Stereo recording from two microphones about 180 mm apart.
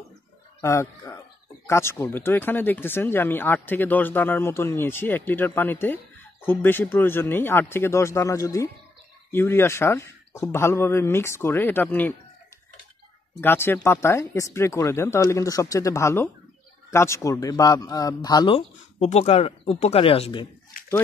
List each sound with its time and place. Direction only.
0.6 s speech: 15° left (ahead or behind)
13.4 s speech: 10° left (ahead or behind); by 20.4 s 30° left (ahead or behind)